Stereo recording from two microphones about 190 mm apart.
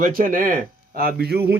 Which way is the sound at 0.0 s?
50° right (ahead or behind).